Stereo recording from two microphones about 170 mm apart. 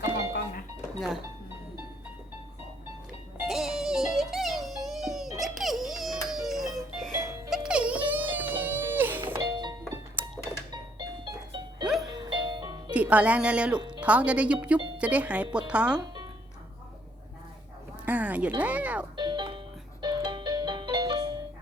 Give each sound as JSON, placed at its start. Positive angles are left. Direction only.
{"t": 0.9, "sound": "speech", "side_deg": 0}
{"t": 3.4, "sound": "music", "side_deg": 0}
{"t": 9.4, "sound": "music", "side_deg": -25}
{"t": 12.9, "sound": "speech", "side_deg": -10}
{"t": 18.0, "sound": "music", "side_deg": -10}
{"t": 18.6, "sound": "speech", "side_deg": -10}
{"t": 19.1, "sound": "music", "side_deg": -25}